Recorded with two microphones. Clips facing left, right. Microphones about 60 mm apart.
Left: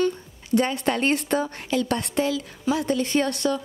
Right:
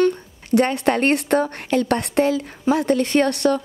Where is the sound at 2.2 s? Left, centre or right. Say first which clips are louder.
Right 5 dB; right.